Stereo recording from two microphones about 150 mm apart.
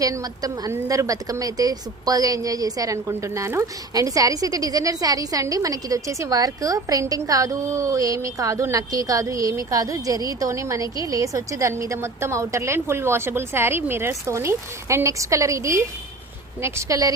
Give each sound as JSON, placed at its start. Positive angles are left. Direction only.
{"t": 0.0, "sound": "a woman's voice", "side_deg": -25}